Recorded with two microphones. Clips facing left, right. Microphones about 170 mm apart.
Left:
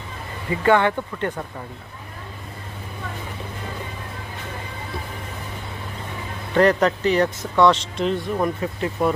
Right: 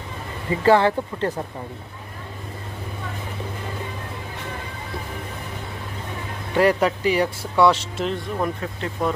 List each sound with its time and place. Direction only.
0.5 s speech: 30° right (ahead or behind)
6.5 s speech: 10° right (ahead or behind)